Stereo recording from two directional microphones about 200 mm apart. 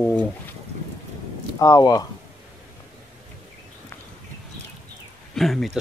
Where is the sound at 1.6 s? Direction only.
20° left (ahead or behind).